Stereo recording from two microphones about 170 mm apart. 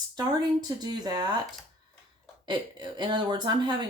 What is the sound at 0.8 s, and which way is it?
Speech, 25° right (ahead or behind).